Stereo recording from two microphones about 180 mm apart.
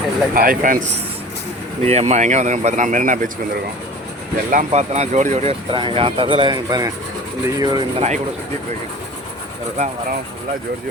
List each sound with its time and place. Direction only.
0.3 s speech: 50° right (ahead or behind)
4.5 s speech: 40° right (ahead or behind)
9.7 s speech: 40° right (ahead or behind)